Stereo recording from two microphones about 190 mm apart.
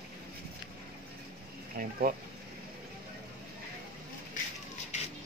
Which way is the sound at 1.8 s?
45° right (ahead or behind).